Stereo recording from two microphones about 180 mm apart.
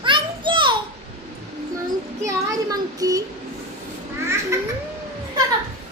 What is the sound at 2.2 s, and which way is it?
A child's voice, 20° right (ahead or behind).